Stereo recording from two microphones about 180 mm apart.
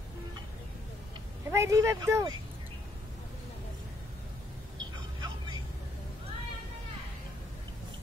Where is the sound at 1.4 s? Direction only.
15° right (ahead or behind).